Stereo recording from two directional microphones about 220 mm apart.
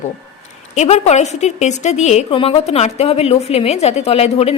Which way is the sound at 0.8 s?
30° left (ahead or behind).